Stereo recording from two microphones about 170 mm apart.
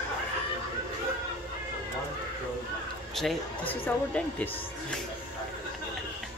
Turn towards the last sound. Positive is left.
turn(degrees=10)  # may be behind; listen again after turning